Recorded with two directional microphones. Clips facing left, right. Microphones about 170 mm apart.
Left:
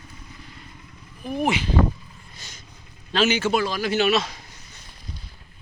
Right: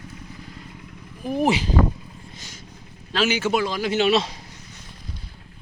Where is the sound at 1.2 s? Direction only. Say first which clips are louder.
Right 3 dB; 35° right (ahead or behind).